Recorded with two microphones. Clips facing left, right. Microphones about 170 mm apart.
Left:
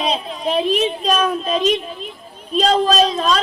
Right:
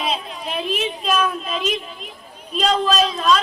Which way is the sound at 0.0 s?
35° left (ahead or behind).